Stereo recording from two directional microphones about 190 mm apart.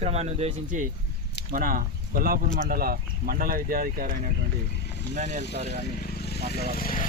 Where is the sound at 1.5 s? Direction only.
50° right (ahead or behind).